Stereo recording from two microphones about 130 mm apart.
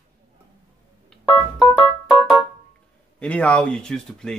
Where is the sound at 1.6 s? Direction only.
35° left (ahead or behind).